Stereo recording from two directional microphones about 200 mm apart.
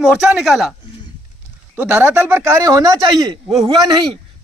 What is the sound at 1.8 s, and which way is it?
Speech, 5° right (ahead or behind).